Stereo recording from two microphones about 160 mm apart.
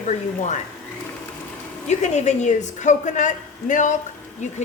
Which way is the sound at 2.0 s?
50° left (ahead or behind).